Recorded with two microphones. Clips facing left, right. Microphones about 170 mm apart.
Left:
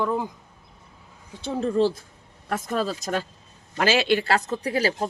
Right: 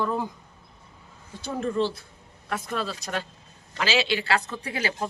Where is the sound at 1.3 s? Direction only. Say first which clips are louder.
Left 3 dB; 25° left (ahead or behind).